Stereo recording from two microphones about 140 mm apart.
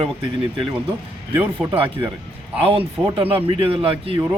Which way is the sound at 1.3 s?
20° right (ahead or behind).